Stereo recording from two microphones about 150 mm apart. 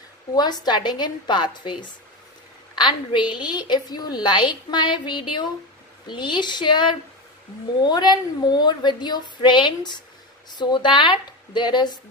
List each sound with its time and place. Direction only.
0.3 s a woman's voice: 25° left (ahead or behind)